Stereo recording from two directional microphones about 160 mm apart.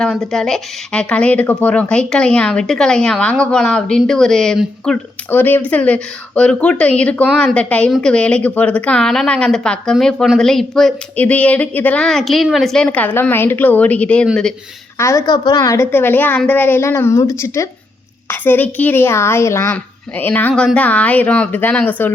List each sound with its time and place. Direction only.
0.0 s speech: 5° left (ahead or behind)
14.9 s speech: 20° left (ahead or behind)